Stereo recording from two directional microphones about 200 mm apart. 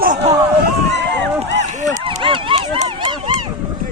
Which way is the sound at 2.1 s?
25° right (ahead or behind).